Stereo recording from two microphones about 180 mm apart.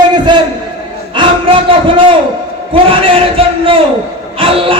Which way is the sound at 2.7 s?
30° right (ahead or behind).